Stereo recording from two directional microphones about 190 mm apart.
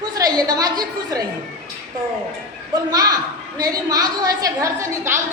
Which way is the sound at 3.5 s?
20° right (ahead or behind).